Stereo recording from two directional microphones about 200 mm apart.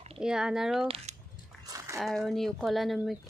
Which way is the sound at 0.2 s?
5° right (ahead or behind).